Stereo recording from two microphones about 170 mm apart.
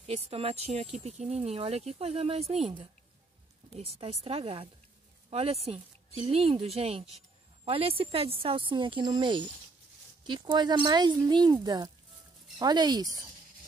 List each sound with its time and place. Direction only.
0.0 s speech: 40° right (ahead or behind)